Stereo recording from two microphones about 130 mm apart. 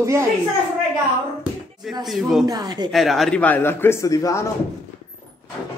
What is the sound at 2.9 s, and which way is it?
Speech, centre (ahead or behind).